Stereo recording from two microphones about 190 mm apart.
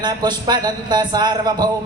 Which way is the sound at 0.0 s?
20° right (ahead or behind).